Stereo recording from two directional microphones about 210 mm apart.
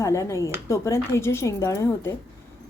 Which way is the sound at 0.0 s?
15° left (ahead or behind).